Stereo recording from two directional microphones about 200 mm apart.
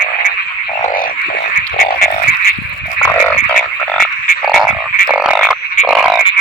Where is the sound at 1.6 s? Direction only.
45° left (ahead or behind).